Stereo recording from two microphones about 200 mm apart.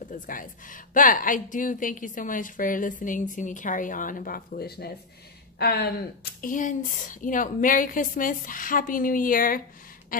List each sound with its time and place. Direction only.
0.1 s a woman's voice: 40° left (ahead or behind)
6.4 s a woman's voice: 40° left (ahead or behind)